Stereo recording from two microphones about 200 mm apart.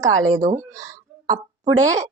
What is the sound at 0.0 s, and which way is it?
A woman's voice, 15° right (ahead or behind).